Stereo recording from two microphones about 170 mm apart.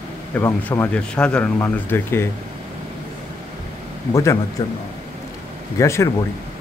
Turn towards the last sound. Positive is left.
turn(degrees=20)  # may be behind; listen again after turning